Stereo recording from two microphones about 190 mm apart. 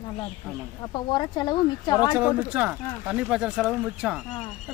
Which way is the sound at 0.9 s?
25° left (ahead or behind).